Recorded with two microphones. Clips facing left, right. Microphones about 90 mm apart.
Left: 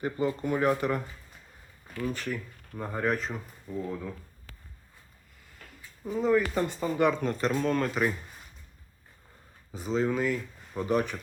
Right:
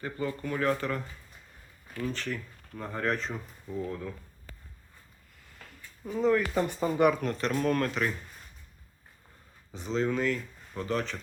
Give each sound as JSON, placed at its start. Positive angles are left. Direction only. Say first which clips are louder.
{"t": 0.0, "sound": "speech", "louder": "left 4 dB", "side_deg": 20}
{"t": 6.1, "sound": "speech", "louder": "left 1 dB", "side_deg": 5}
{"t": 6.7, "sound": "speech", "louder": "right 2 dB", "side_deg": -15}
{"t": 7.2, "sound": "speech", "louder": "left 1 dB", "side_deg": 5}
{"t": 9.7, "sound": "speech", "louder": "left 1 dB", "side_deg": 5}